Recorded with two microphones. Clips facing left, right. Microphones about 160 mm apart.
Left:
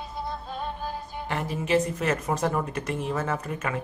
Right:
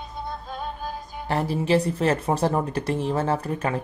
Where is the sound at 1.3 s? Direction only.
35° right (ahead or behind).